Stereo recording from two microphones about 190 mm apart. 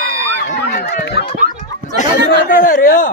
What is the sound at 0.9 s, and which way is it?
Speech, 60° left (ahead or behind).